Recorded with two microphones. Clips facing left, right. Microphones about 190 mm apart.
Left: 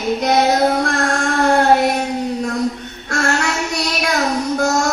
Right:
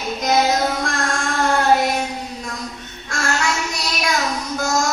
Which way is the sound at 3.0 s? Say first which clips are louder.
Left 3 dB; 60° left (ahead or behind).